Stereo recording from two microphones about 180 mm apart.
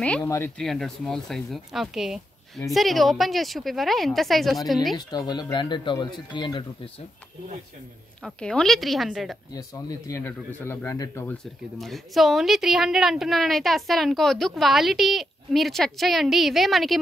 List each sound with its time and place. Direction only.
0.2 s speech: 15° left (ahead or behind)
0.6 s a woman's voice: centre (ahead or behind)
4.9 s speech: 20° left (ahead or behind)
8.2 s a woman's voice: 5° left (ahead or behind)
9.5 s speech: 20° left (ahead or behind)
11.8 s a woman's voice: centre (ahead or behind)